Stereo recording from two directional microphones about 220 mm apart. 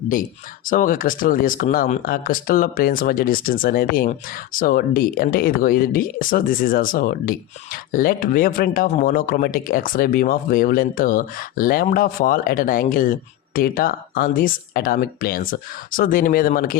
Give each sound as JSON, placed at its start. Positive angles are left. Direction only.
{"t": 0.1, "sound": "speech", "side_deg": 40}